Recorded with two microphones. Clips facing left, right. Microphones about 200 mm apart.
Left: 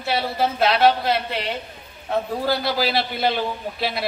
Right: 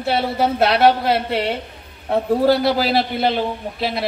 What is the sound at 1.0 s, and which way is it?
A man's voice, 65° right (ahead or behind).